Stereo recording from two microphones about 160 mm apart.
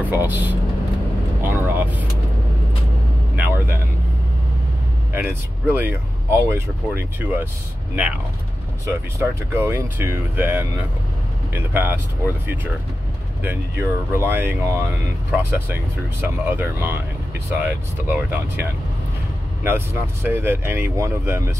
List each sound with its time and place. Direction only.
0.0 s speech: 15° right (ahead or behind)
1.4 s vehicle: 10° right (ahead or behind)
3.4 s vehicle: 15° right (ahead or behind)
5.1 s speech: 15° right (ahead or behind)
8.8 s speech: 15° right (ahead or behind)
13.4 s speech: 15° right (ahead or behind)